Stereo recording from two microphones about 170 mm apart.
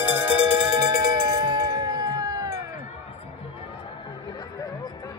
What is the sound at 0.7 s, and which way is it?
Music, 20° right (ahead or behind).